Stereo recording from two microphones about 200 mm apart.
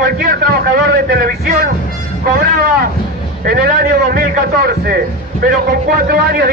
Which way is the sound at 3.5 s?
45° right (ahead or behind).